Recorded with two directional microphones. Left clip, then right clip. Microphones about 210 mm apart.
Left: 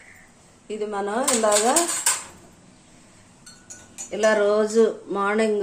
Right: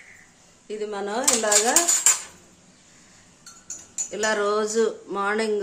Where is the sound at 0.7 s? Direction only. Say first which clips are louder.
Left 2 dB; 15° right (ahead or behind).